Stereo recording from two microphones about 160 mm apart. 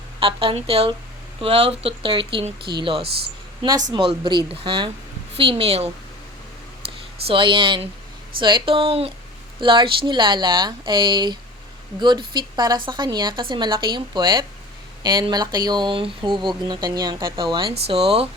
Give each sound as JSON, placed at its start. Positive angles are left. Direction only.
{"t": 0.2, "sound": "speech", "side_deg": -35}
{"t": 7.3, "sound": "a woman's voice", "side_deg": -30}